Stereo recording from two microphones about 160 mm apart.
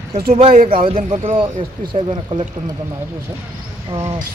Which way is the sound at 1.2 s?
35° right (ahead or behind).